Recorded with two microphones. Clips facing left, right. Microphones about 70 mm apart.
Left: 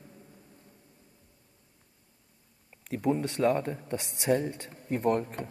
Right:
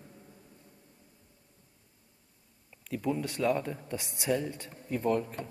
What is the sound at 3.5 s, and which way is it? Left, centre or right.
Speech, left.